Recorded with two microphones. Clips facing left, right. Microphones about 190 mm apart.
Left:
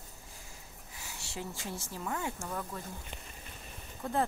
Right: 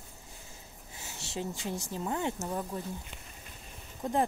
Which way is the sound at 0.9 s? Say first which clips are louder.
Right 4 dB; 20° right (ahead or behind).